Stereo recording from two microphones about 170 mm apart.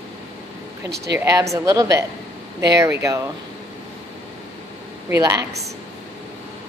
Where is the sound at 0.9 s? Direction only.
75° right (ahead or behind).